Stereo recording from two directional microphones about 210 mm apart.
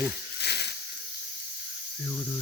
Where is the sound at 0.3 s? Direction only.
50° left (ahead or behind).